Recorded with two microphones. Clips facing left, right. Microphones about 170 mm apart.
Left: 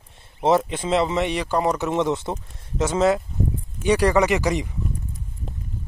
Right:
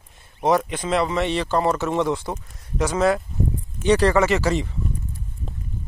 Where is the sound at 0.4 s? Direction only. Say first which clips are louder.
Left 1 dB; 25° left (ahead or behind).